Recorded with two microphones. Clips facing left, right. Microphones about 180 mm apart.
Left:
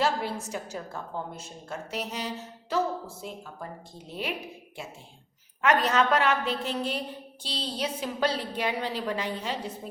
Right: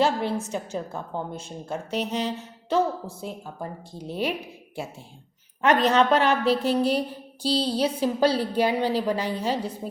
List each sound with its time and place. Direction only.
0.0 s a sound: 25° right (ahead or behind)
0.5 s a woman's voice: 25° right (ahead or behind)
5.6 s a woman's voice: 30° right (ahead or behind)